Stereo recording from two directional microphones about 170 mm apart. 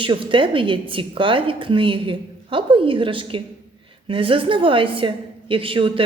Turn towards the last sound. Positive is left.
turn(degrees=-30)  # may be behind; listen again after turning